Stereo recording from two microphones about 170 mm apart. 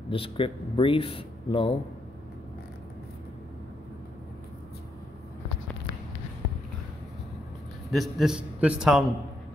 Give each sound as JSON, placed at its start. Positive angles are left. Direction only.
{"t": 0.1, "sound": "speech", "side_deg": 30}
{"t": 7.9, "sound": "a man's voice", "side_deg": 0}